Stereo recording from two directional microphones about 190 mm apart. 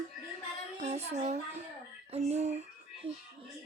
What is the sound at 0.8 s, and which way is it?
Speech, 35° right (ahead or behind).